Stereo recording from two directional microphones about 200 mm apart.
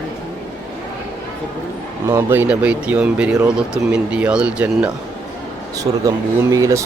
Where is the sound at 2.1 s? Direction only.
10° right (ahead or behind).